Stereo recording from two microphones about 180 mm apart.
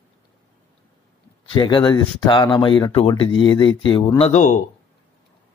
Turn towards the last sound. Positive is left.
turn(degrees=40)  # may be behind; listen again after turning